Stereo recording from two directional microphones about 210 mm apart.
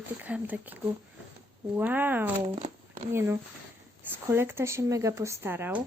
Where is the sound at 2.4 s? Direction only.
25° right (ahead or behind).